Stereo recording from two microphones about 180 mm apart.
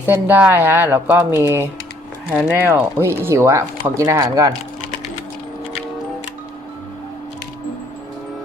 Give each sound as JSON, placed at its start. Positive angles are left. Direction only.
{"t": 0.0, "sound": "speech", "side_deg": -10}